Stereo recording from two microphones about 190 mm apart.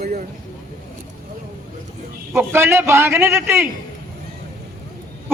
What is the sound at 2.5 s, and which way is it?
A man's voice, 10° right (ahead or behind).